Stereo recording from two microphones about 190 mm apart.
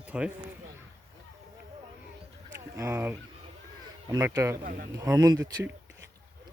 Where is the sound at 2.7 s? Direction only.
15° right (ahead or behind).